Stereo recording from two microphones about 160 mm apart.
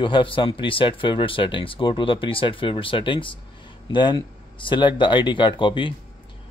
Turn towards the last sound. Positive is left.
turn(degrees=30)  # may be behind; listen again after turning